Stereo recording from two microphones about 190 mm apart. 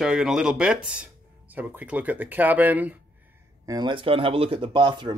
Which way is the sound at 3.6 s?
20° right (ahead or behind).